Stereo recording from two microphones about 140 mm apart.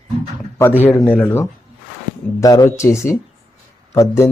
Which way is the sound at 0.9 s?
5° left (ahead or behind).